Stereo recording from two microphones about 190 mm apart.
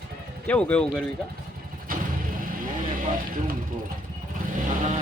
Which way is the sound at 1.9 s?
50° right (ahead or behind).